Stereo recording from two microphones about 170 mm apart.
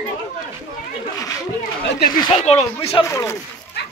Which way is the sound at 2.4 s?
40° left (ahead or behind).